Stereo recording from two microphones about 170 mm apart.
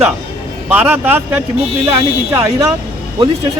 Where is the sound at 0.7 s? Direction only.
10° right (ahead or behind).